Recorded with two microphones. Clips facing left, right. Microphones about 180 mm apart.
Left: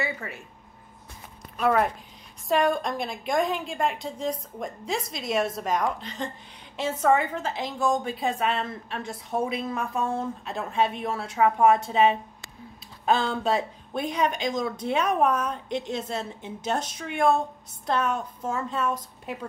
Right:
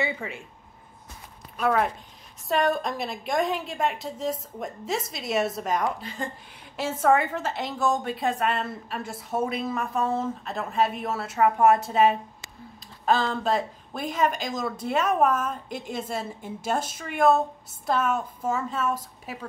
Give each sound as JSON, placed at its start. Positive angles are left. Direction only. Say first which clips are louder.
{"t": 0.0, "sound": "speech", "louder": "right 2 dB", "side_deg": -20}
{"t": 1.6, "sound": "a woman's voice", "louder": "left 1 dB", "side_deg": 0}